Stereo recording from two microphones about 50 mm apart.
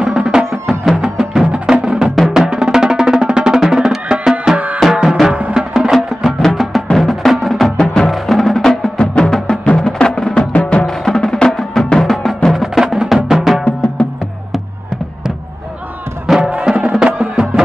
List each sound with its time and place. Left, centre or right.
0.0 s music: centre
5.9 s music: centre
16.3 s music: centre
16.9 s music: centre